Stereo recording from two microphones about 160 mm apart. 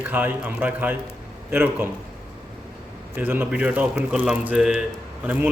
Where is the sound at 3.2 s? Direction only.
10° right (ahead or behind).